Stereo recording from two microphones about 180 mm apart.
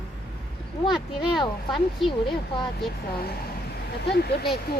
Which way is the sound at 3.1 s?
55° left (ahead or behind).